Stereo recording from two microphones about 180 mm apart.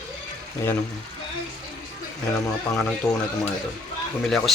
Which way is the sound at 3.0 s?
20° left (ahead or behind).